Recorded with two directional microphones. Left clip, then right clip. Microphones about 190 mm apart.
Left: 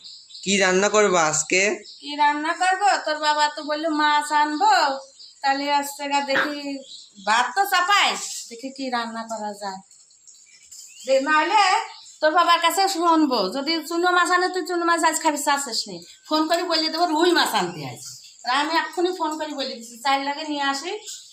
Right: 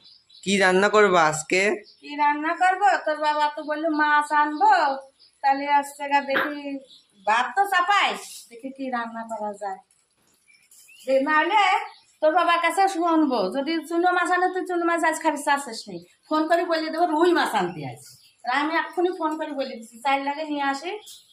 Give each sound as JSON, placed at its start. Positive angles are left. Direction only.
{"t": 0.4, "sound": "a woman's voice", "side_deg": 0}
{"t": 11.0, "sound": "a woman's voice", "side_deg": -5}